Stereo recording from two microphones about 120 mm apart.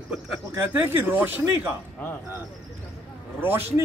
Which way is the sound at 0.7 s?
15° right (ahead or behind).